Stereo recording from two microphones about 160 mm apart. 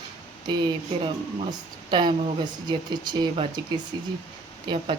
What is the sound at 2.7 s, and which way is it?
Speech, 25° right (ahead or behind).